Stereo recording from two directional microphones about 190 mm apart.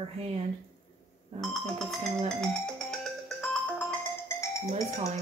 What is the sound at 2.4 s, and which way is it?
Music, 5° left (ahead or behind).